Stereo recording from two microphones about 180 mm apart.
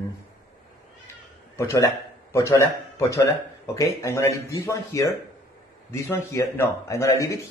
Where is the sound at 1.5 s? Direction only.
15° left (ahead or behind).